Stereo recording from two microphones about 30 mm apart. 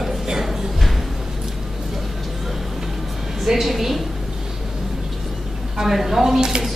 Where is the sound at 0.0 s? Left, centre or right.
Centre.